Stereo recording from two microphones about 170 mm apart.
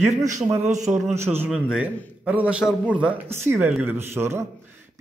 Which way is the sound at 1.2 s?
15° right (ahead or behind).